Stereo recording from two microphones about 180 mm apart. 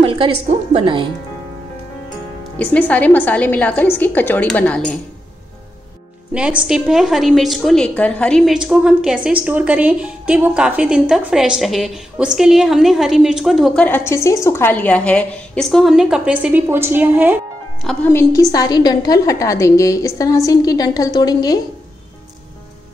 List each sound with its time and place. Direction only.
0.0 s a woman's voice: 30° right (ahead or behind)
2.6 s a woman's voice: 10° left (ahead or behind)
6.3 s a woman's voice: 5° right (ahead or behind)
13.8 s a woman's voice: 10° left (ahead or behind); by 17.4 s 10° right (ahead or behind)
17.8 s a woman's voice: 10° left (ahead or behind)